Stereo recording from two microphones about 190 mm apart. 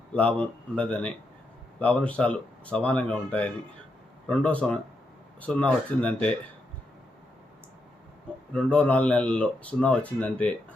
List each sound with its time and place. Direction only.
0.1 s speech: 5° left (ahead or behind)
8.5 s speech: 5° left (ahead or behind)